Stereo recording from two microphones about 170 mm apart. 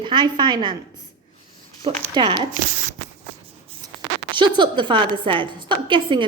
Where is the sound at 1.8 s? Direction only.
25° right (ahead or behind).